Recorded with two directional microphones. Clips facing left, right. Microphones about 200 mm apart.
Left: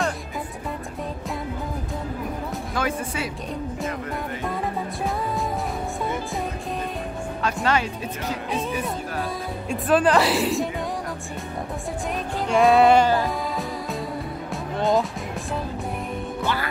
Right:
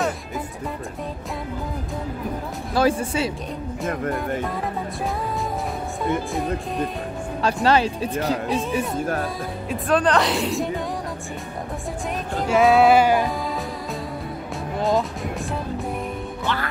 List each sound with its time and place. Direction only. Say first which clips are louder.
2.7 s speech: right 8 dB; 35° right (ahead or behind)
7.4 s speech: right 5 dB; 35° right (ahead or behind)
9.7 s speech: left 1 dB; 5° left (ahead or behind)
12.4 s speech: right 1 dB; centre (ahead or behind)
14.8 s music: even; centre (ahead or behind)